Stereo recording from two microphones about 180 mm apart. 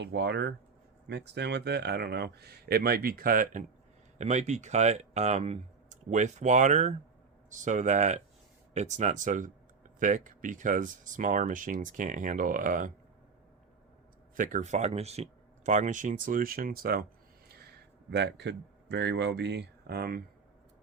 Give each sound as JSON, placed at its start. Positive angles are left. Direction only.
{"t": 0.0, "sound": "speech", "side_deg": -70}
{"t": 14.3, "sound": "speech", "side_deg": -45}
{"t": 18.1, "sound": "speech", "side_deg": -70}